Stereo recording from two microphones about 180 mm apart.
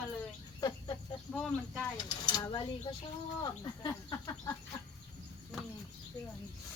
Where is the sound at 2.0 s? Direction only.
25° left (ahead or behind).